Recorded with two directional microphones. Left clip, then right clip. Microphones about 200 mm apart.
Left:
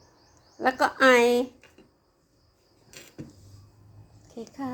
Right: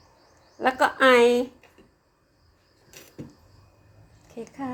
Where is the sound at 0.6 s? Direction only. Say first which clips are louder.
Right 1 dB; 5° left (ahead or behind).